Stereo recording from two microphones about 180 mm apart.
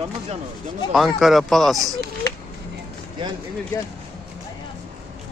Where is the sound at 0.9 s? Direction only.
Centre (ahead or behind).